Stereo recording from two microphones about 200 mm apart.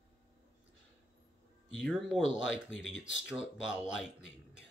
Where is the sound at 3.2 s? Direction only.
5° right (ahead or behind).